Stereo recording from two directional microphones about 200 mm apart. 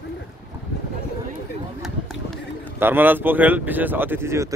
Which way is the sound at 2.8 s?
10° right (ahead or behind).